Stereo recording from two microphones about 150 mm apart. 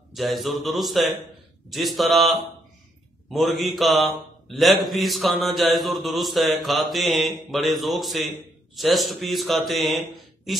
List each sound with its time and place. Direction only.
0.1 s a man's voice: centre (ahead or behind)